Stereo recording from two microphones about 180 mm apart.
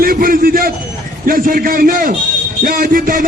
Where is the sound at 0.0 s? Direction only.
55° right (ahead or behind).